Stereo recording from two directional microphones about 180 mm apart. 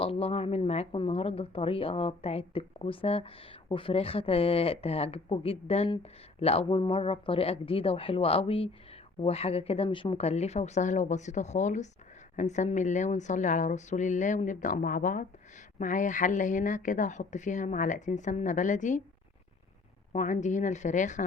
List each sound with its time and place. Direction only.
0.0 s a woman's voice: 35° left (ahead or behind)
20.1 s a woman's voice: 45° left (ahead or behind)